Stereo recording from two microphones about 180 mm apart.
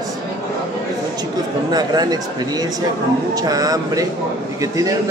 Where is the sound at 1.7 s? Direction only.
20° right (ahead or behind).